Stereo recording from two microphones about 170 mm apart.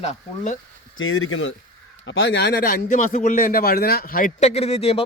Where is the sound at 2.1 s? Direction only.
90° left; by 2.8 s 65° left (ahead or behind).